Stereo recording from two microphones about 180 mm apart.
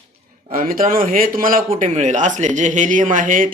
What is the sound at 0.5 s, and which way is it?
Speech, 50° right (ahead or behind).